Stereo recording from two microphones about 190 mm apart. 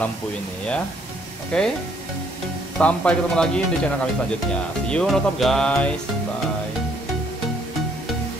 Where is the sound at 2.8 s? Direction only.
5° left (ahead or behind).